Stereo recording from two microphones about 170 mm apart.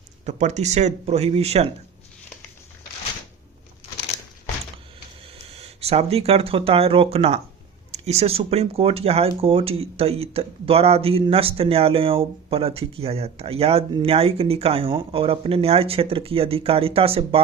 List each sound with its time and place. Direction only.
0.3 s speech: 45° right (ahead or behind)
5.5 s speech: 35° right (ahead or behind)